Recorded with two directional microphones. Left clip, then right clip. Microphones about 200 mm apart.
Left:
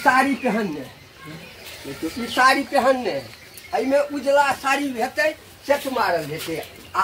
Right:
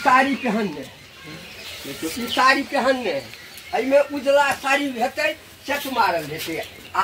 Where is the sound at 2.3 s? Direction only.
Centre (ahead or behind).